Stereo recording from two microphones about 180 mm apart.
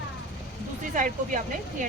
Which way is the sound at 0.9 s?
45° right (ahead or behind).